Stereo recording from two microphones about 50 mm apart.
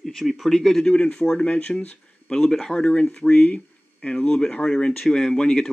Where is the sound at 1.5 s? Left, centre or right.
Left.